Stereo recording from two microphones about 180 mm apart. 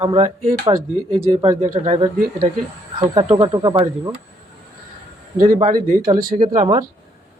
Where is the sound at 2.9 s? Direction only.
25° right (ahead or behind).